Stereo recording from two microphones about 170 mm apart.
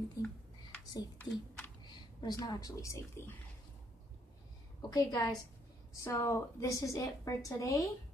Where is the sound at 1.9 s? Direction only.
20° left (ahead or behind).